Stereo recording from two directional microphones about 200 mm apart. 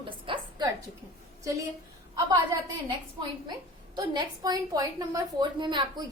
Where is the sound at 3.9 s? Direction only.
20° right (ahead or behind).